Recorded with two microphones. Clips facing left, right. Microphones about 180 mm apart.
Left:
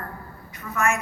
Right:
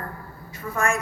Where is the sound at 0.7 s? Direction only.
35° right (ahead or behind).